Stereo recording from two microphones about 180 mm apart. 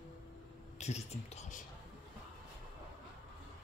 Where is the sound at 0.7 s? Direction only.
40° left (ahead or behind).